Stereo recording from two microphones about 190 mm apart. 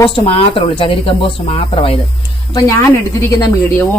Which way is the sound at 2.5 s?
15° left (ahead or behind).